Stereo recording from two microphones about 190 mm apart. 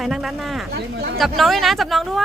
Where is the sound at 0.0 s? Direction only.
Centre (ahead or behind).